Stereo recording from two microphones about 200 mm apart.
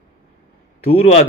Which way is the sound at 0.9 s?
30° left (ahead or behind).